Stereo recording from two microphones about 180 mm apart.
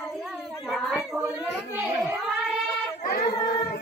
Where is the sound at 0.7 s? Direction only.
5° right (ahead or behind).